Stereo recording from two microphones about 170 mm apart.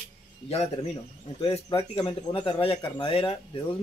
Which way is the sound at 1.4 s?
35° left (ahead or behind).